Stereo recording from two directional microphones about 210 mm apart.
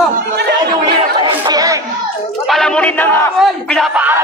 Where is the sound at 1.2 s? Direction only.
15° right (ahead or behind).